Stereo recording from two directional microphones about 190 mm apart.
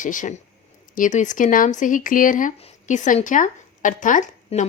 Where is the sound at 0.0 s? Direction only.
45° left (ahead or behind).